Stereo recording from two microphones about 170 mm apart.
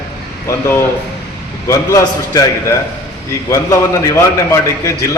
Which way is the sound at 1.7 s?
20° left (ahead or behind).